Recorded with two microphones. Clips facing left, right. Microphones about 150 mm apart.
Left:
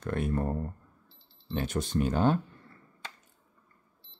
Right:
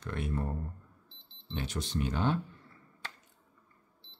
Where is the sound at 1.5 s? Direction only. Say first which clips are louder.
Left 6 dB; 50° left (ahead or behind).